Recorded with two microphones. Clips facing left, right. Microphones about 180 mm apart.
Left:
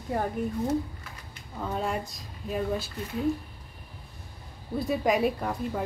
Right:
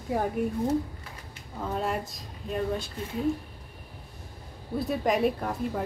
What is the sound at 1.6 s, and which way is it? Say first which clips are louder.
Speech: even; centre (ahead or behind).